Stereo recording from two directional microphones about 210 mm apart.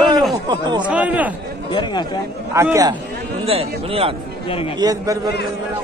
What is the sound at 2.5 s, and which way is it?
Speech, 15° right (ahead or behind).